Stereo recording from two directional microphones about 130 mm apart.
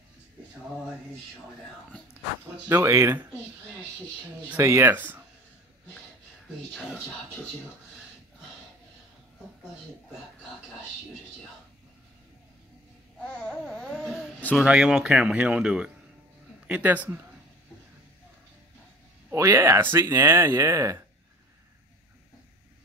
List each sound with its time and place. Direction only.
2.7 s speech: 20° right (ahead or behind)
4.5 s speech: 20° right (ahead or behind)
6.7 s speech: 5° left (ahead or behind)
13.2 s babbling: 5° left (ahead or behind)
14.6 s speech: 5° right (ahead or behind)
19.3 s speech: 20° right (ahead or behind)